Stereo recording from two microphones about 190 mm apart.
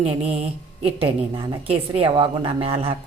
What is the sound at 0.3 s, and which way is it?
A woman's voice, 30° right (ahead or behind).